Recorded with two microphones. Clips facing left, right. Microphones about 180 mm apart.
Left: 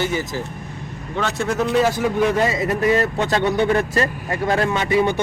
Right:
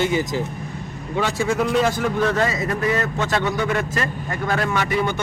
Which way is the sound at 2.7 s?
30° left (ahead or behind).